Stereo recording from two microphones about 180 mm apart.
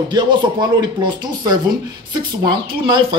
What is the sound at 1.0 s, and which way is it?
Speech, 25° right (ahead or behind).